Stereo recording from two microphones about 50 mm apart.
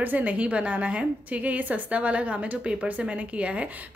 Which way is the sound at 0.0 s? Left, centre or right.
Right.